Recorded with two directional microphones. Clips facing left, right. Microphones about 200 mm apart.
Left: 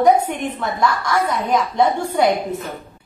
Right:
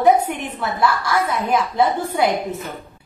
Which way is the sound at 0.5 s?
5° right (ahead or behind).